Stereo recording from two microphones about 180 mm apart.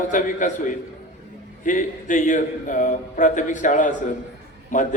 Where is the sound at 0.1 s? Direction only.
45° left (ahead or behind).